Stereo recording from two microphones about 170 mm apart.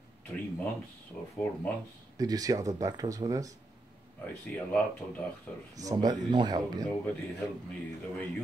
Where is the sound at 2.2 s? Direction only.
20° right (ahead or behind).